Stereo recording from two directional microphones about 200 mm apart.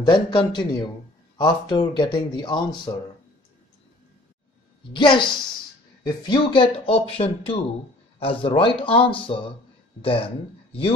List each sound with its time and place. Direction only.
0.0 s speech: 25° left (ahead or behind)
4.9 s speech: 25° left (ahead or behind)